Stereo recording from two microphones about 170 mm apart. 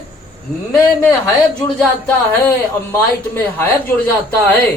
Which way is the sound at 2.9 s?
10° left (ahead or behind).